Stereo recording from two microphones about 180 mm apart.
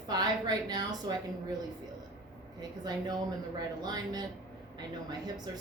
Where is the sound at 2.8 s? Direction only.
20° right (ahead or behind).